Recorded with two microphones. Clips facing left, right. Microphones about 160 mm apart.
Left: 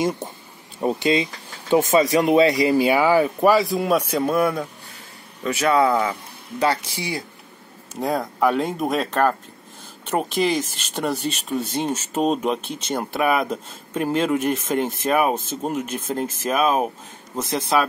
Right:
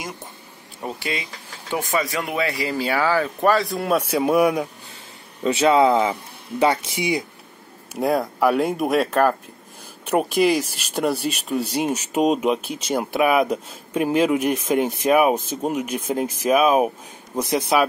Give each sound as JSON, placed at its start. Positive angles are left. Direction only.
{"t": 0.7, "sound": "speech", "side_deg": 20}
{"t": 3.3, "sound": "speech", "side_deg": 5}
{"t": 5.4, "sound": "speech", "side_deg": -30}
{"t": 8.0, "sound": "speech", "side_deg": -10}